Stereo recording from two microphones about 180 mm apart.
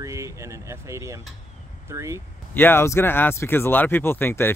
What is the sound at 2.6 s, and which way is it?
Speech, 10° left (ahead or behind).